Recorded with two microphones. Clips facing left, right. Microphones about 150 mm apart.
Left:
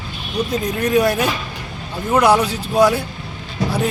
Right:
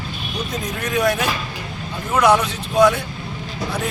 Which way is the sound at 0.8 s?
30° left (ahead or behind).